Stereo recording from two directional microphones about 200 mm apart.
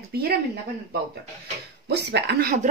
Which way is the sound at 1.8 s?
55° right (ahead or behind).